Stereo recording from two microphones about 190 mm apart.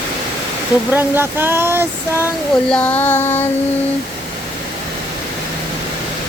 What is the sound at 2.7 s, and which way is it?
Child singing, 10° left (ahead or behind).